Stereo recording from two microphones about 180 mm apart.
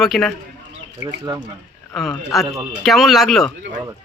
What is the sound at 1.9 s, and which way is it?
Speech, centre (ahead or behind).